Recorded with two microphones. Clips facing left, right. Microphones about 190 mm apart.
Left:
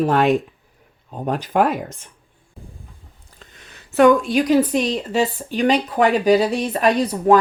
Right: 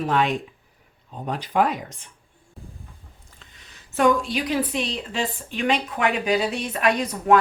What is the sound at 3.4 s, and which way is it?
A woman's voice, 50° left (ahead or behind).